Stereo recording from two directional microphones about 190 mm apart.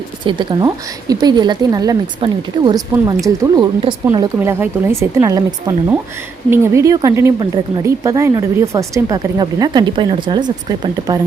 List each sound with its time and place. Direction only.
0.3 s speech: 20° right (ahead or behind)
4.4 s speech: 10° right (ahead or behind)